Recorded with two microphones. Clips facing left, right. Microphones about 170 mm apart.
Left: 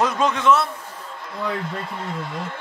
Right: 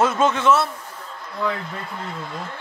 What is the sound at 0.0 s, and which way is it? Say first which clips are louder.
Speech: right 1 dB; 5° right (ahead or behind).